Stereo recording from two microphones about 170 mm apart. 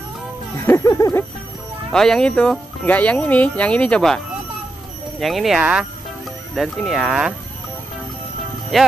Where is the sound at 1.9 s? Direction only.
5° left (ahead or behind).